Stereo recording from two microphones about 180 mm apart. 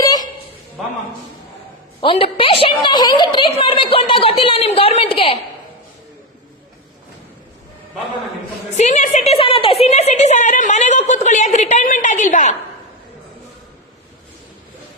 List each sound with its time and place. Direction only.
0.0 s a sound: 20° left (ahead or behind)
2.0 s a woman's voice: 30° left (ahead or behind)
8.8 s a woman's voice: 40° left (ahead or behind)